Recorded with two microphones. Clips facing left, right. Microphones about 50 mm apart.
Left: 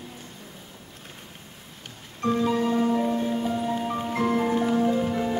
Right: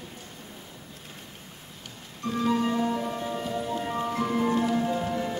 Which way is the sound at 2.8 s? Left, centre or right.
Centre.